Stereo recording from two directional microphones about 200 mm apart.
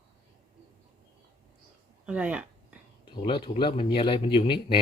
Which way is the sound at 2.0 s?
5° right (ahead or behind).